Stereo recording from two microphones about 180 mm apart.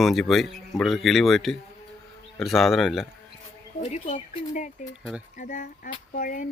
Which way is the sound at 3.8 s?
35° left (ahead or behind).